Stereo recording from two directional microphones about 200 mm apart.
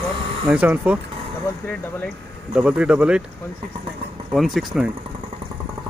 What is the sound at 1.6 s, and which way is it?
Speech, 5° left (ahead or behind).